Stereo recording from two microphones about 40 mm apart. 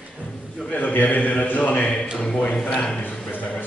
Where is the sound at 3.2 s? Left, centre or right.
Left.